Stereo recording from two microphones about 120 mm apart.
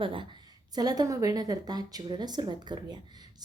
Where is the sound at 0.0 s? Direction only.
45° right (ahead or behind).